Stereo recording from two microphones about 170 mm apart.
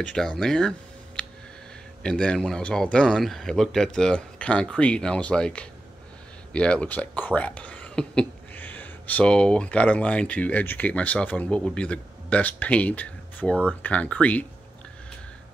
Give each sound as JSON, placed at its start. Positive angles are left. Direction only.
{"t": 0.0, "sound": "speech", "side_deg": 5}